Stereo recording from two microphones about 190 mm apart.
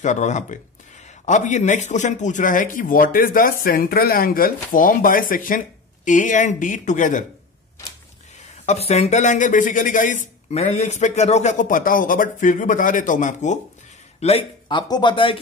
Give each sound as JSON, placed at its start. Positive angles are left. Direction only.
{"t": 0.0, "sound": "speech", "side_deg": 40}
{"t": 8.6, "sound": "speech", "side_deg": 35}
{"t": 14.2, "sound": "speech", "side_deg": 30}